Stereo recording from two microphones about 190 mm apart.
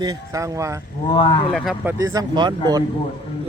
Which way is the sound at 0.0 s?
15° right (ahead or behind).